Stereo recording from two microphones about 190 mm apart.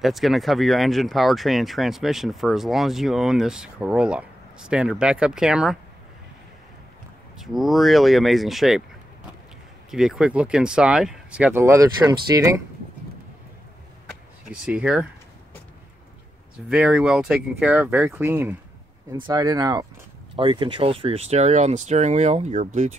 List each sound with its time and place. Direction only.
0.0 s speech: centre (ahead or behind)
7.3 s speech: centre (ahead or behind)
9.8 s speech: 5° right (ahead or behind)
14.5 s speech: 5° right (ahead or behind)
16.6 s speech: 5° right (ahead or behind); by 22.7 s 35° right (ahead or behind)